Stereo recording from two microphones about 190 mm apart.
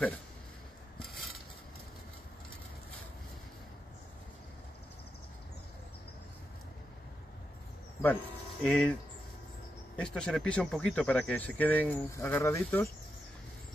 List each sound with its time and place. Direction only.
0.9 s a sound: centre (ahead or behind)
8.6 s speech: 5° left (ahead or behind)
9.9 s speech: 5° left (ahead or behind)